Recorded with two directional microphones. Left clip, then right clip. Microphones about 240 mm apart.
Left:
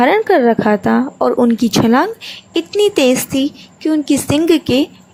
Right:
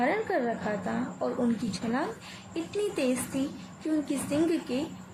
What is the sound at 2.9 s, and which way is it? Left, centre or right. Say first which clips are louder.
A woman's voice: left 17 dB; left.